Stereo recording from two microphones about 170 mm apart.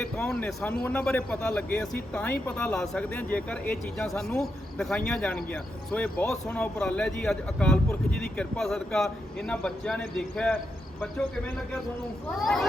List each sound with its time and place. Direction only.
0.0 s a man's voice: 5° left (ahead or behind)